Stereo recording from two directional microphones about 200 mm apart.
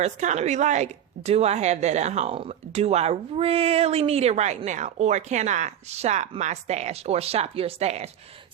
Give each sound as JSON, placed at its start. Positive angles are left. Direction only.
{"t": 0.0, "sound": "a woman's voice", "side_deg": -35}